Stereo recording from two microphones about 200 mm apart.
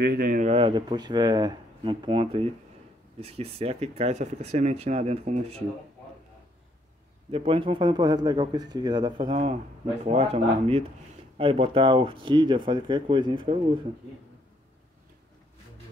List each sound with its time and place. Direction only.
0.0 s speech: 50° right (ahead or behind)
0.5 s speech: 25° right (ahead or behind)
7.2 s speech: 30° right (ahead or behind)